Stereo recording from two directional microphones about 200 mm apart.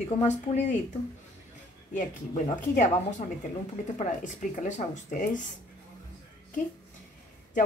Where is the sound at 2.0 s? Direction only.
40° left (ahead or behind).